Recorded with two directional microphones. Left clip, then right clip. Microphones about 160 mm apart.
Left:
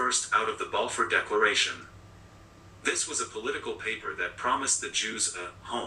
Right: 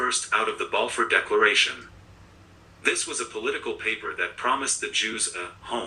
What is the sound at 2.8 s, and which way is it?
Speech, 25° right (ahead or behind).